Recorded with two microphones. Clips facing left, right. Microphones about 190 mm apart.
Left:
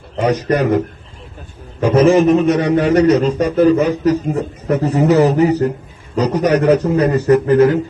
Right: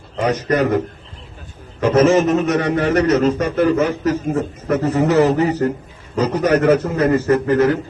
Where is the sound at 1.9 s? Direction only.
35° left (ahead or behind).